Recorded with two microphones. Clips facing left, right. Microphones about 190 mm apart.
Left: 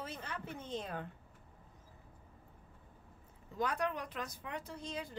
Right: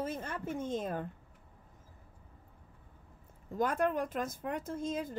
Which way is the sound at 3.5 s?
50° right (ahead or behind).